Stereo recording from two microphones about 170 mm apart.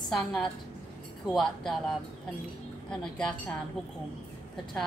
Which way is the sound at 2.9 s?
5° left (ahead or behind).